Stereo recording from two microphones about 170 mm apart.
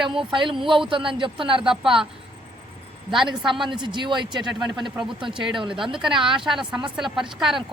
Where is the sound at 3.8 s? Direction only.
25° right (ahead or behind).